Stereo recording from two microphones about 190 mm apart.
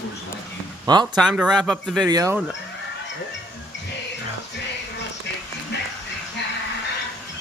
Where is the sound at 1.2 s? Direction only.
5° right (ahead or behind).